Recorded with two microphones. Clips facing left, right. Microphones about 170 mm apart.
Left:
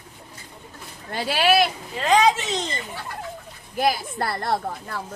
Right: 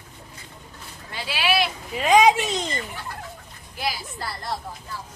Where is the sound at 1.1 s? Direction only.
45° left (ahead or behind).